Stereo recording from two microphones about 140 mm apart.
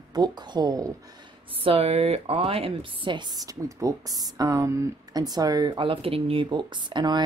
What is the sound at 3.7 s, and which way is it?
Speech, 25° right (ahead or behind).